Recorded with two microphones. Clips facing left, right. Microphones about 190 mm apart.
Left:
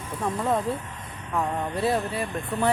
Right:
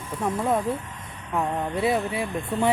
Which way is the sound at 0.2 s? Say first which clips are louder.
Right 1 dB; 10° right (ahead or behind).